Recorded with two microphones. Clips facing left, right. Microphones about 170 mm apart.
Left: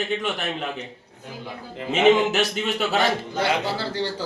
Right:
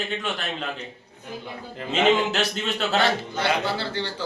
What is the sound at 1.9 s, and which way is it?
A man's voice, 10° left (ahead or behind).